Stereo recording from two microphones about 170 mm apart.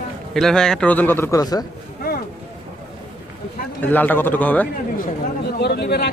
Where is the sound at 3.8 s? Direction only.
10° left (ahead or behind).